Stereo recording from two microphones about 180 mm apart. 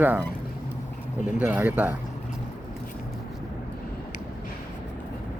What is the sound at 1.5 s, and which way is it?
Speech, 10° right (ahead or behind).